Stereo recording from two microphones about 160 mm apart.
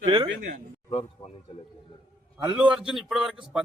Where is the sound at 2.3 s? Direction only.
5° right (ahead or behind).